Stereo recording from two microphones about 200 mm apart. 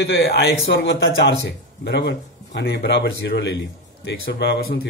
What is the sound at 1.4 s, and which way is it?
Speech, 55° left (ahead or behind).